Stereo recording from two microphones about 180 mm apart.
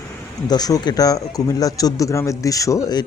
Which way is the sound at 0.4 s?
20° left (ahead or behind).